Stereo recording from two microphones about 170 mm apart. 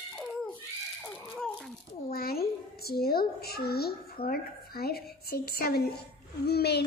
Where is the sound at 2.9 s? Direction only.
65° left (ahead or behind).